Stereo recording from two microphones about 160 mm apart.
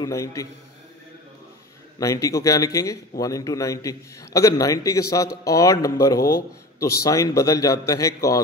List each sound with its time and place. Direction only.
0.0 s a man's voice: 20° left (ahead or behind)
2.0 s a man's voice: 20° left (ahead or behind)